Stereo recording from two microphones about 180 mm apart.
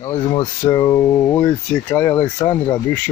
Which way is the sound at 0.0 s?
25° left (ahead or behind).